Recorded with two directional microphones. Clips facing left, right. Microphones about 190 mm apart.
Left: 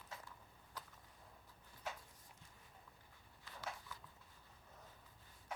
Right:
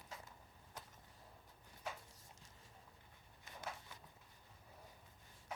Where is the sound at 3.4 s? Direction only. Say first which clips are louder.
Even; 20° right (ahead or behind).